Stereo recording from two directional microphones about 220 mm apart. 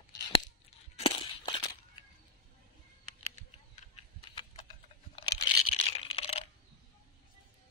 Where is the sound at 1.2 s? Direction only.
20° left (ahead or behind).